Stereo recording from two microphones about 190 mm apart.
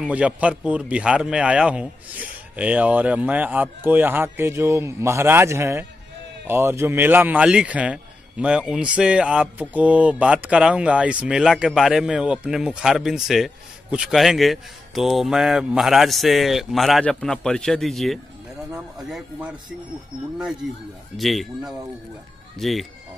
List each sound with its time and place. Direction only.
0.0 s a man's voice: 5° right (ahead or behind)
21.2 s a man's voice: centre (ahead or behind)